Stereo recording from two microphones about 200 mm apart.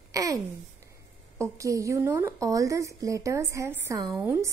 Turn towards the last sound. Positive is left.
turn(degrees=-10)  # may be behind; listen again after turning